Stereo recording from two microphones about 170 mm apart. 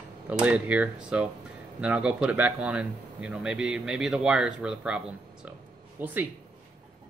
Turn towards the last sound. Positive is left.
turn(degrees=-10)  # may be behind; listen again after turning